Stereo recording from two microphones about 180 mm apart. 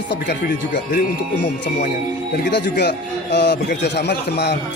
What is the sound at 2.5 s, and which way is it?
Speech, 70° left (ahead or behind).